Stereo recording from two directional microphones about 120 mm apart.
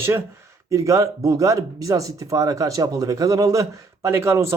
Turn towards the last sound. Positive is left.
turn(degrees=-20)  # may be behind; listen again after turning